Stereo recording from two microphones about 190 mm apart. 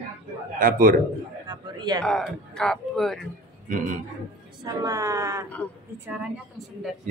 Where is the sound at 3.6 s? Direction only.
40° right (ahead or behind).